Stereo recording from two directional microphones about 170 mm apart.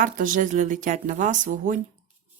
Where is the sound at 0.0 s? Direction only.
50° right (ahead or behind).